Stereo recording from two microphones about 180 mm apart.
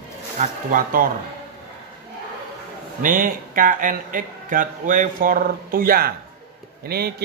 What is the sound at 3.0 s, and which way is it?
Speech, 50° right (ahead or behind).